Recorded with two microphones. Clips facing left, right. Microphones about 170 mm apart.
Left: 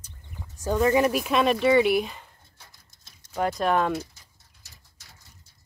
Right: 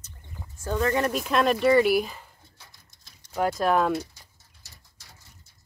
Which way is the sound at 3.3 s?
Centre (ahead or behind).